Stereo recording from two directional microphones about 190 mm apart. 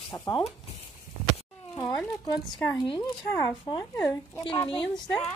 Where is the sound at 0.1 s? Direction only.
15° left (ahead or behind).